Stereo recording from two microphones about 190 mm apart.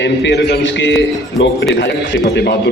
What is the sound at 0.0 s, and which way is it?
A man's voice, 65° left (ahead or behind).